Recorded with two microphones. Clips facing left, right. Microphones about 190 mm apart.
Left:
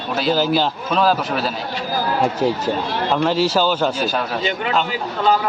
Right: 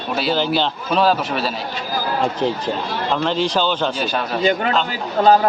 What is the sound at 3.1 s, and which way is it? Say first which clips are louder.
A man's voice: left 2 dB; 5° left (ahead or behind).